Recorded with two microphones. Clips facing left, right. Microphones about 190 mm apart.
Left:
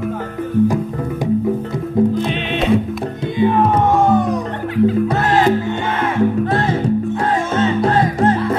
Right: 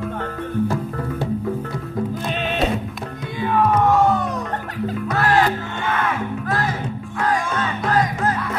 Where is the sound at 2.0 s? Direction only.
25° left (ahead or behind).